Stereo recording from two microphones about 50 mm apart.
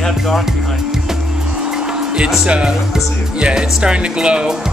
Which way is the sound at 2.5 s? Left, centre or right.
Centre.